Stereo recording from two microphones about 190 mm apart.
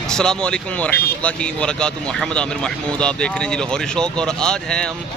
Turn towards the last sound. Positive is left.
turn(degrees=5)  # may be behind; listen again after turning